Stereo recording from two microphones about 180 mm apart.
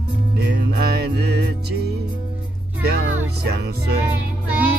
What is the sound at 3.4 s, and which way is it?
Music, 65° right (ahead or behind).